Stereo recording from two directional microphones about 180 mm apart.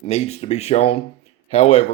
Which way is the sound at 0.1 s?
35° left (ahead or behind).